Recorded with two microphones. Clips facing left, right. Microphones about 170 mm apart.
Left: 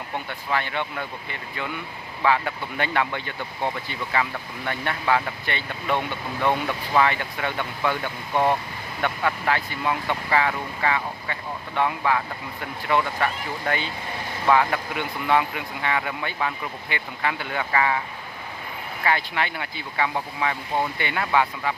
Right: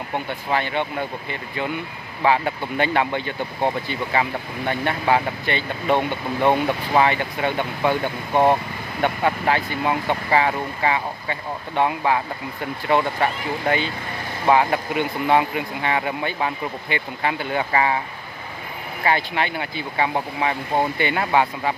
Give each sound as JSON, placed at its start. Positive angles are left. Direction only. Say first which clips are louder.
{"t": 0.5, "sound": "speech", "louder": "right 3 dB", "side_deg": -25}
{"t": 2.2, "sound": "speech", "louder": "right 3 dB", "side_deg": -25}
{"t": 19.0, "sound": "speech", "louder": "right 3 dB", "side_deg": -25}